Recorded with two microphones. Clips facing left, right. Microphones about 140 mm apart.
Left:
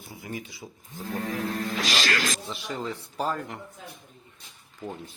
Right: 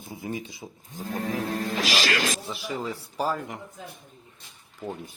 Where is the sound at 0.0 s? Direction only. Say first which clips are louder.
Right 4 dB; 20° right (ahead or behind).